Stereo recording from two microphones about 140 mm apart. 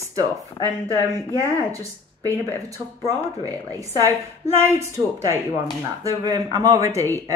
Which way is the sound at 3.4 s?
25° right (ahead or behind).